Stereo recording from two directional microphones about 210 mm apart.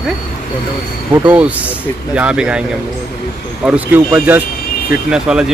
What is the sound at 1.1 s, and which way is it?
Speech, 10° right (ahead or behind).